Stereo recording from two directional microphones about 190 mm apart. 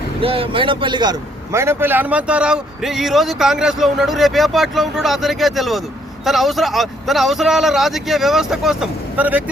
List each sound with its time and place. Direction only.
0.2 s speech: 30° right (ahead or behind)
1.5 s speech: 10° right (ahead or behind)